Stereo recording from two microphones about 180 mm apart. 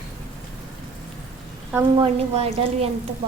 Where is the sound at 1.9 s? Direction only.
30° right (ahead or behind).